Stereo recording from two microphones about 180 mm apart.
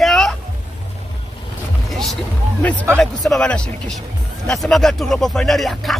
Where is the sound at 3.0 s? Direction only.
Centre (ahead or behind).